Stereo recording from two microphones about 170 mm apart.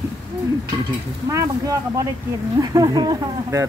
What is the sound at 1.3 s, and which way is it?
Speech, 20° right (ahead or behind).